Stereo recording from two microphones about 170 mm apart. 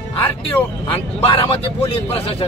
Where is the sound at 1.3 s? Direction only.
30° left (ahead or behind).